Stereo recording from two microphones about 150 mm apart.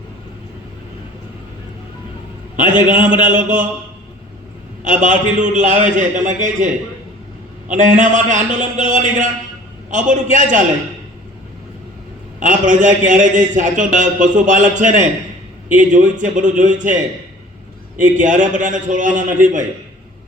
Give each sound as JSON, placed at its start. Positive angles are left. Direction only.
{"t": 2.6, "sound": "a man's voice", "side_deg": -60}
{"t": 4.8, "sound": "a man's voice", "side_deg": -55}
{"t": 12.4, "sound": "a man's voice", "side_deg": -60}